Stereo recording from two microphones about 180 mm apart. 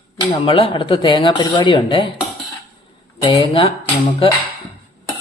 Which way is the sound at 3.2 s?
25° left (ahead or behind).